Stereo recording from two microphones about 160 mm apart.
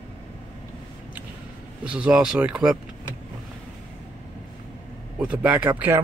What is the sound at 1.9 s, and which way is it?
Speech, 5° right (ahead or behind).